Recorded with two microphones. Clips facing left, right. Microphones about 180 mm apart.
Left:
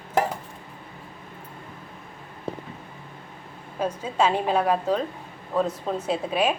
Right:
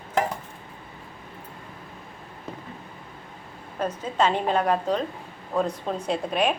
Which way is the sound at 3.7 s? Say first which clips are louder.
Left 1 dB; 10° left (ahead or behind).